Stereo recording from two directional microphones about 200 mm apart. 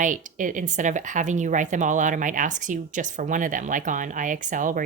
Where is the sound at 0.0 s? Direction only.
40° right (ahead or behind).